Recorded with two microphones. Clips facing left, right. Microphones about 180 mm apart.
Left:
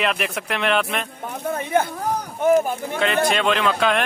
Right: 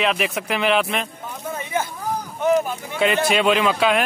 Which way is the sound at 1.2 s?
60° left (ahead or behind).